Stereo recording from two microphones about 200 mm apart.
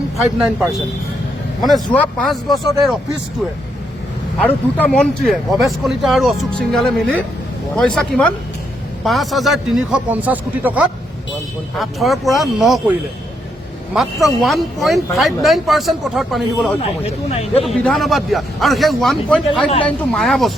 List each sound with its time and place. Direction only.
1.6 s speech: 5° left (ahead or behind)
4.4 s speech: 5° left (ahead or behind)
17.0 s speech: 30° left (ahead or behind)
17.6 s speech: centre (ahead or behind)